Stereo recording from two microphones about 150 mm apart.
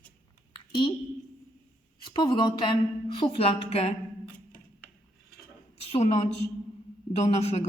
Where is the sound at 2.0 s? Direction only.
30° left (ahead or behind).